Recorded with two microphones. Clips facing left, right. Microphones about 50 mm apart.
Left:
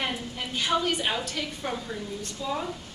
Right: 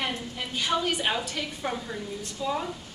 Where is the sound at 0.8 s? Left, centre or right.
Centre.